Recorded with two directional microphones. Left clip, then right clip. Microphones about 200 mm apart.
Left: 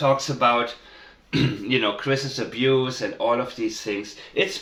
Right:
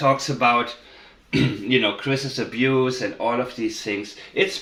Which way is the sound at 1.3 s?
30° right (ahead or behind).